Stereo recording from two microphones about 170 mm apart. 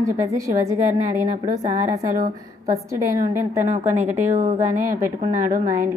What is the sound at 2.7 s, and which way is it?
A woman's voice, 20° right (ahead or behind).